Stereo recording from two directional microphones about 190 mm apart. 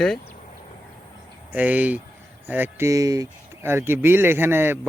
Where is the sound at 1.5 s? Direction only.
10° right (ahead or behind).